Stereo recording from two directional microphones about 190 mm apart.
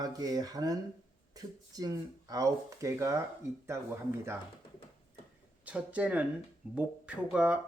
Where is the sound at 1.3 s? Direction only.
20° right (ahead or behind).